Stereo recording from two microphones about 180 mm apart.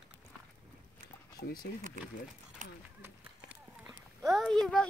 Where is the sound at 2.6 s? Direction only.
45° right (ahead or behind).